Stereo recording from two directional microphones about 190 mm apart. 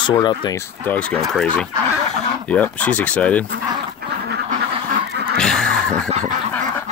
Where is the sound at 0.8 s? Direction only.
5° left (ahead or behind).